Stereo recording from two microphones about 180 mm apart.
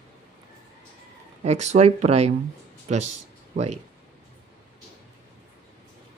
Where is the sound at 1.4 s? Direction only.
40° right (ahead or behind).